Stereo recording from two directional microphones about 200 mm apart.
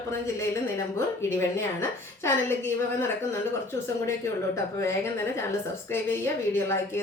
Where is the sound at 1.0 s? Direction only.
10° left (ahead or behind).